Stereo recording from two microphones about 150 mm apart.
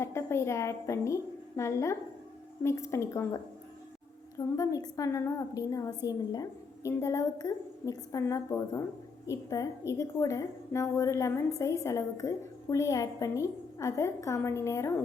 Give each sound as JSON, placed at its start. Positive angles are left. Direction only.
{"t": 0.0, "sound": "a woman's voice", "side_deg": 15}